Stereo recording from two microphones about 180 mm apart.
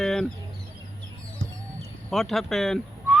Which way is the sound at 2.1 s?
Centre (ahead or behind).